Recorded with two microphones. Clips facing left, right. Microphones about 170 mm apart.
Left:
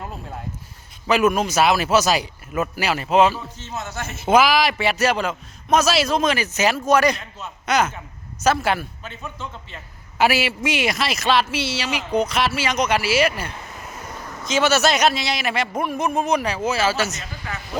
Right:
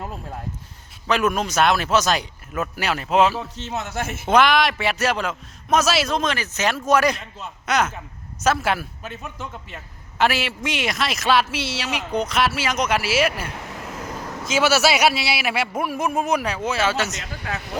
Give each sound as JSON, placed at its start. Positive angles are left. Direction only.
{"t": 1.0, "sound": "a man's voice", "side_deg": 5}
{"t": 3.5, "sound": "a man's voice", "side_deg": -70}
{"t": 4.3, "sound": "a man's voice", "side_deg": 5}
{"t": 10.2, "sound": "a man's voice", "side_deg": 5}
{"t": 13.6, "sound": "a sound", "side_deg": -70}
{"t": 14.4, "sound": "a man's voice", "side_deg": -5}
{"t": 17.2, "sound": "speech", "side_deg": -70}